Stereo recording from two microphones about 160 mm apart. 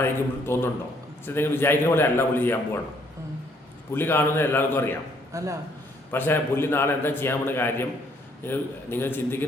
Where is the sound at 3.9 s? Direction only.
15° left (ahead or behind).